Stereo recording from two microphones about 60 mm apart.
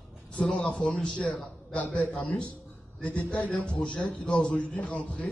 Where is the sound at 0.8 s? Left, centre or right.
Centre.